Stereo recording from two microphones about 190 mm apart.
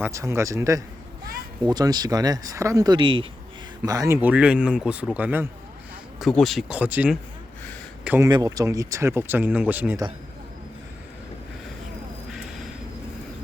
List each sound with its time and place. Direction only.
0.0 s speech: 15° right (ahead or behind)
6.1 s speech: centre (ahead or behind)
12.3 s a sound: centre (ahead or behind)